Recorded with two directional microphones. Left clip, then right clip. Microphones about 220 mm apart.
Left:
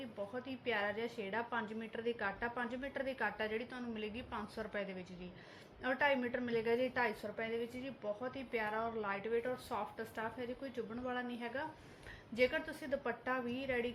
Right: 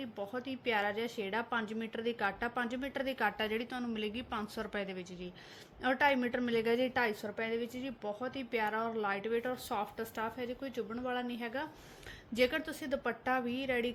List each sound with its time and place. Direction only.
0.0 s a woman's voice: 45° right (ahead or behind)